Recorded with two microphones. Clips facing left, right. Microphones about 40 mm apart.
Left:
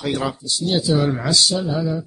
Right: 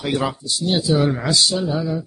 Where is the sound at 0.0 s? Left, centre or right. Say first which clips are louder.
Right 1 dB; centre.